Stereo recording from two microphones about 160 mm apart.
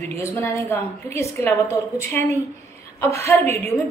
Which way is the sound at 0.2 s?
15° left (ahead or behind).